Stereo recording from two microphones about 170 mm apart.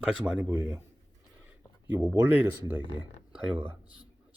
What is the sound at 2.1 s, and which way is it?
Speech, 10° right (ahead or behind).